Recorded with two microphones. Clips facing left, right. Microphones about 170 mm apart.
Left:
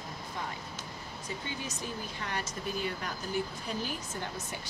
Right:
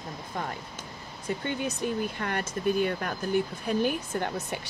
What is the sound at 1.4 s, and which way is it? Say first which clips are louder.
Speech: right 11 dB; 60° right (ahead or behind).